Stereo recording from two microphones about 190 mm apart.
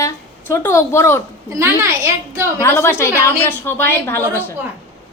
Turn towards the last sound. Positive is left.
turn(degrees=10)  # may be behind; listen again after turning